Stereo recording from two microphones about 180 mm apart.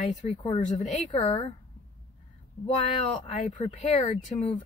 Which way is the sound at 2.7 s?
40° left (ahead or behind).